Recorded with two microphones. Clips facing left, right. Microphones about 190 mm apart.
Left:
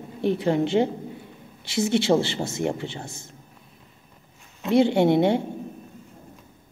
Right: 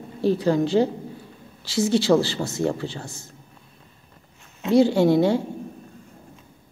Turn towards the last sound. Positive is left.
turn(degrees=20)  # may be behind; listen again after turning